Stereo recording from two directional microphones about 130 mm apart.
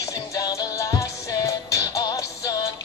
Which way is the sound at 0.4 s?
25° left (ahead or behind).